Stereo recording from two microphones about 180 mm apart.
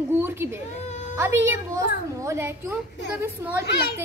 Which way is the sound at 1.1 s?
15° right (ahead or behind).